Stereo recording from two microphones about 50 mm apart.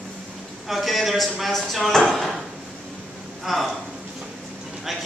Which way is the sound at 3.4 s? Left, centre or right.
Centre.